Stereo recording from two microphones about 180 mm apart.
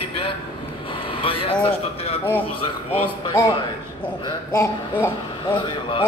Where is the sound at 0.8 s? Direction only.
30° left (ahead or behind).